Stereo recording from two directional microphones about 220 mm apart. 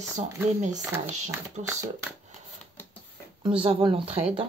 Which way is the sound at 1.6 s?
30° right (ahead or behind).